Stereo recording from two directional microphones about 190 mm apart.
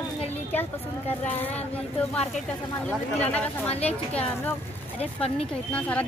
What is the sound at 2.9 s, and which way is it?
Speech, 10° left (ahead or behind).